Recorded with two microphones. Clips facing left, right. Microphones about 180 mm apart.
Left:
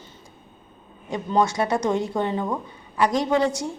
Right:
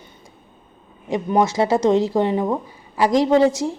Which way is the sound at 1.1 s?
20° right (ahead or behind).